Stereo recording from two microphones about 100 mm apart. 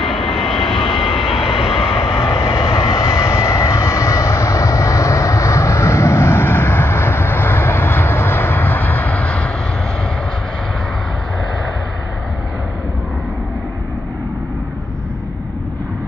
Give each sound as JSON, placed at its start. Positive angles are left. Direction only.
{"t": 0.0, "sound": "vehicle", "side_deg": 0}
{"t": 2.1, "sound": "vehicle", "side_deg": 30}